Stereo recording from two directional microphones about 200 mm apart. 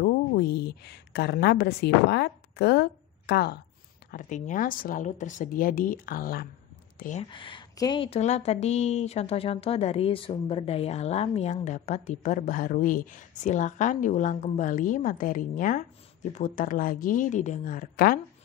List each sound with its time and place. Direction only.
0.0 s a woman's voice: 50° left (ahead or behind)
4.1 s speech: 40° left (ahead or behind)
7.2 s speech: 25° left (ahead or behind); by 18.2 s 45° left (ahead or behind)